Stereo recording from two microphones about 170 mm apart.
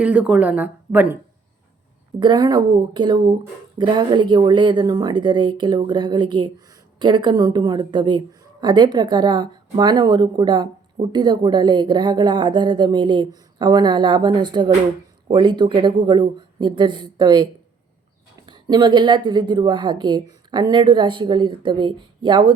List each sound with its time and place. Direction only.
0.0 s speech: 5° right (ahead or behind)
2.1 s a woman's voice: 25° right (ahead or behind)